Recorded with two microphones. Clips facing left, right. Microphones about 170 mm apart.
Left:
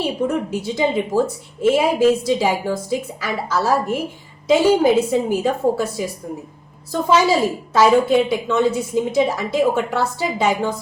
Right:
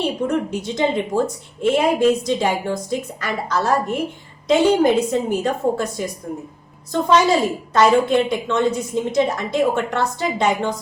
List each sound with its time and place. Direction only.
0.0 s a woman's voice: 5° left (ahead or behind)